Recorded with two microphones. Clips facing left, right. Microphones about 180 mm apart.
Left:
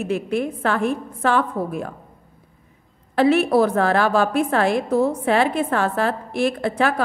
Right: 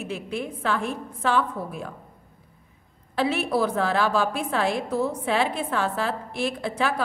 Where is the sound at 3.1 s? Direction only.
55° left (ahead or behind).